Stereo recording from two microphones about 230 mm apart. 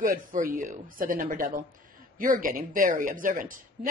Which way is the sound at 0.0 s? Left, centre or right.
Right.